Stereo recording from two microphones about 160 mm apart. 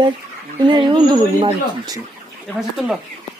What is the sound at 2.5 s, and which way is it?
Speech, centre (ahead or behind).